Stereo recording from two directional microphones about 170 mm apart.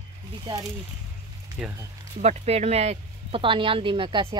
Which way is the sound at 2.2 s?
40° right (ahead or behind).